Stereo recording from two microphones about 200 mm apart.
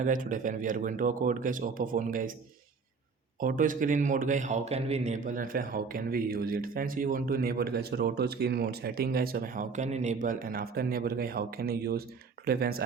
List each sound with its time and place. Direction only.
0.0 s speech: 40° right (ahead or behind)
3.4 s a man's voice: 40° right (ahead or behind)